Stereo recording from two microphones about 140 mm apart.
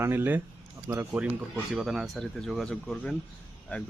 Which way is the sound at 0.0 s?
15° right (ahead or behind).